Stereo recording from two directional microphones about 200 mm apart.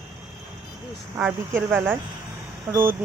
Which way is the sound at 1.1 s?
10° right (ahead or behind).